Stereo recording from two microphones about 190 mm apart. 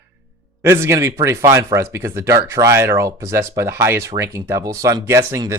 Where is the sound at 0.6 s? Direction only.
15° right (ahead or behind).